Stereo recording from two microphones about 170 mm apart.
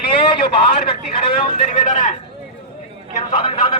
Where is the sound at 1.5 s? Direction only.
45° left (ahead or behind).